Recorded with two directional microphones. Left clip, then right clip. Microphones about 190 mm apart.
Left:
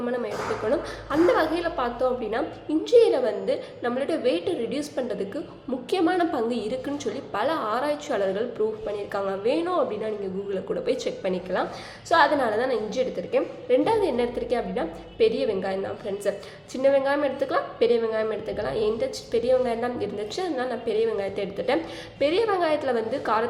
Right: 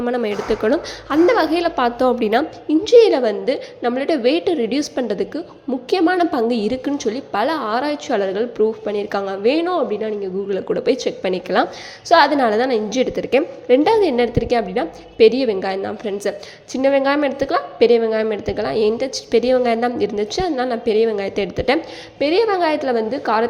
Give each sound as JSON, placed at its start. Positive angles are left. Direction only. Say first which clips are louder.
{"t": 0.0, "sound": "a woman's voice", "louder": "right 7 dB", "side_deg": -45}
{"t": 11.2, "sound": "a woman's voice", "louder": "right 8 dB", "side_deg": -40}